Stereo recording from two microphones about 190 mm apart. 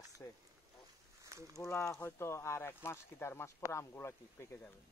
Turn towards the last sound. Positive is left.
turn(degrees=15)  # may be behind; listen again after turning